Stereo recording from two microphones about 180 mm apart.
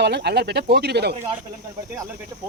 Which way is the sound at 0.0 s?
65° right (ahead or behind).